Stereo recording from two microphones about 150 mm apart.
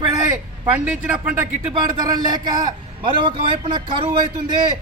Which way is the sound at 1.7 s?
30° right (ahead or behind).